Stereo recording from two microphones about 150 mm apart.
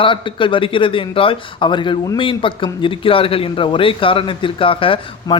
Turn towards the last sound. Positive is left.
turn(degrees=35)  # may be behind; listen again after turning